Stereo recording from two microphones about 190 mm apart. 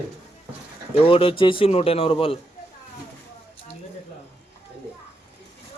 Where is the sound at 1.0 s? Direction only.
30° left (ahead or behind).